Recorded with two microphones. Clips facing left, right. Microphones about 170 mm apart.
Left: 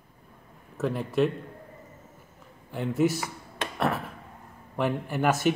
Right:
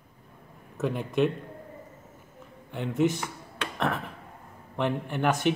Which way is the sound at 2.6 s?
Centre (ahead or behind).